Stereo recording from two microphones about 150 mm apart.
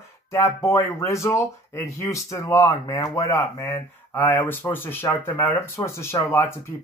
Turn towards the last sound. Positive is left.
turn(degrees=20)  # may be behind; listen again after turning